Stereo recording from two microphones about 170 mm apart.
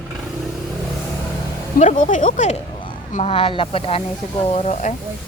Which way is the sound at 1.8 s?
45° left (ahead or behind).